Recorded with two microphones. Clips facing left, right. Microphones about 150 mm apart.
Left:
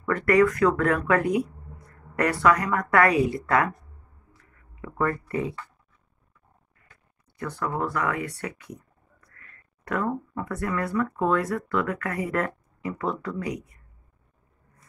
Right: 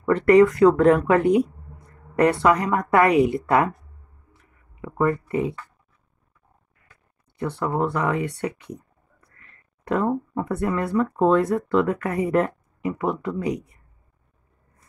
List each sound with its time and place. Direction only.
0.0 s a woman's voice: 25° right (ahead or behind)
4.4 s a sound: 20° right (ahead or behind)
7.3 s speech: 25° right (ahead or behind)